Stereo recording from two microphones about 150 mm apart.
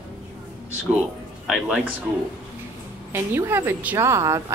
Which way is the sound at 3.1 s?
15° right (ahead or behind).